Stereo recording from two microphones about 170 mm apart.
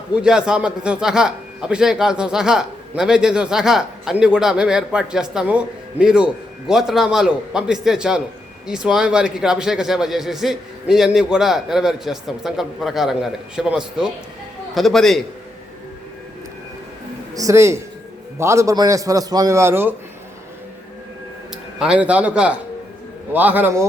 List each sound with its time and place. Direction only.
0.1 s a man's voice: 5° right (ahead or behind)
17.3 s a man's voice: 20° right (ahead or behind)
21.8 s a man's voice: 5° right (ahead or behind)